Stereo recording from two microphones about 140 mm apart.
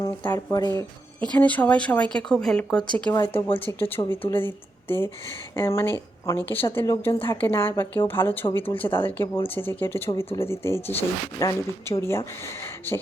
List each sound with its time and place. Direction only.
0.3 s speech: 25° left (ahead or behind)
1.3 s a woman's voice: 10° left (ahead or behind)